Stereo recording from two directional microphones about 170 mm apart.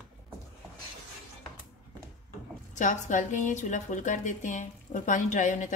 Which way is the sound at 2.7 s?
45° left (ahead or behind).